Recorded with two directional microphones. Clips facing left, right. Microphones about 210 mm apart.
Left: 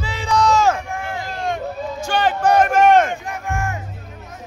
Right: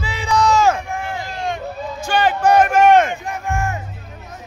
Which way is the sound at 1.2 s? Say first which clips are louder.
Left 1 dB; 50° left (ahead or behind).